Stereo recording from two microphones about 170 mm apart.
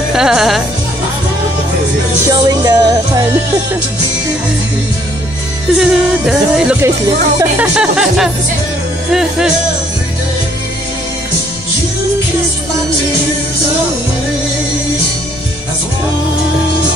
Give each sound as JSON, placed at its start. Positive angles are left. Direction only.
{"t": 0.1, "sound": "music", "side_deg": -5}
{"t": 2.2, "sound": "music", "side_deg": -20}
{"t": 5.8, "sound": "speech", "side_deg": -5}